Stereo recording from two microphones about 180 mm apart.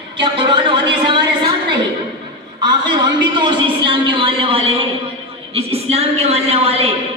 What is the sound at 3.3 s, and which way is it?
A man's voice, 25° right (ahead or behind).